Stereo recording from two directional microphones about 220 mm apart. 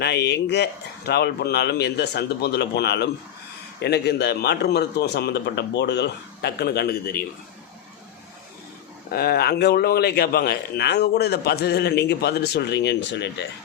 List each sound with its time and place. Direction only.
0.0 s speech: 50° left (ahead or behind)
9.0 s speech: 45° left (ahead or behind)